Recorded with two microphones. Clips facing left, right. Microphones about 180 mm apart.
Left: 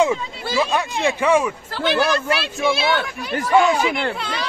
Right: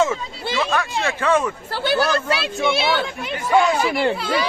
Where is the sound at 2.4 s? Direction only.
25° right (ahead or behind).